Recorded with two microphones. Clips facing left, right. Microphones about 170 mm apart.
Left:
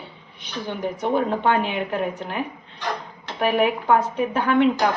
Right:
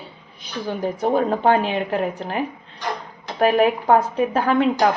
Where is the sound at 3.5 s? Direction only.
35° right (ahead or behind).